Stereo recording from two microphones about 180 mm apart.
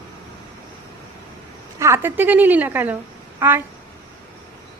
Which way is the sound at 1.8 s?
15° right (ahead or behind).